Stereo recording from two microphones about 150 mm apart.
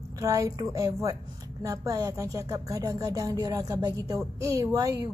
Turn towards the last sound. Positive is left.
turn(degrees=-25)  # may be behind; listen again after turning